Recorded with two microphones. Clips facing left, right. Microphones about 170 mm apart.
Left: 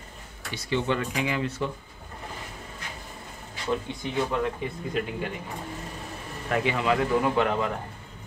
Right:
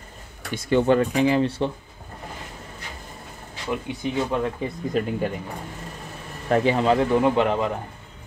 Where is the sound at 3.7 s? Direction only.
15° right (ahead or behind).